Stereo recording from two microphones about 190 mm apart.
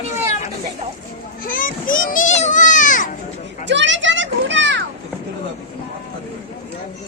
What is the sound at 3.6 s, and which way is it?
Children playing, 70° right (ahead or behind).